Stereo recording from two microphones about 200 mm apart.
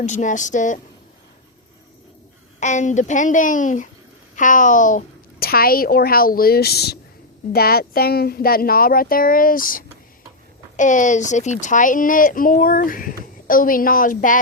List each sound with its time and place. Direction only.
0.0 s a child's voice: 40° left (ahead or behind)
2.6 s a child's voice: 35° left (ahead or behind)